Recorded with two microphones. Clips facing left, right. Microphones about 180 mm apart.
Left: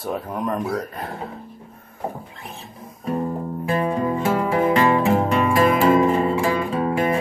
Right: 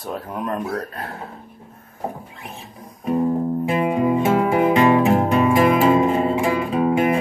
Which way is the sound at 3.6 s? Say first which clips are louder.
Right 1 dB; 15° right (ahead or behind).